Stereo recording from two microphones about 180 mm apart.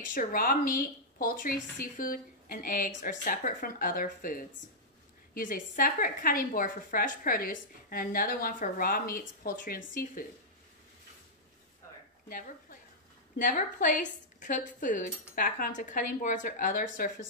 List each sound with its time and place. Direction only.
0.0 s a woman's voice: 45° left (ahead or behind)
12.3 s a woman's voice: 50° left (ahead or behind)